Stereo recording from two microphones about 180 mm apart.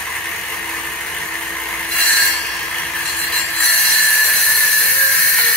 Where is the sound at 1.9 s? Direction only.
5° left (ahead or behind).